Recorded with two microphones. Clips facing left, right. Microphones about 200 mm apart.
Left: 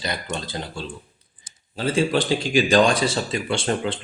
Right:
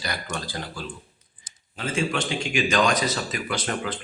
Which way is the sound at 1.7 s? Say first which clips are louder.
Left 6 dB; 35° left (ahead or behind).